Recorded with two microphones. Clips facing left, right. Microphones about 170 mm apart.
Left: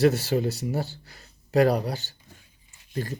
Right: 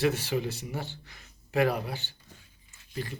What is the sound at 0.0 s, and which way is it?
Speech, 40° left (ahead or behind).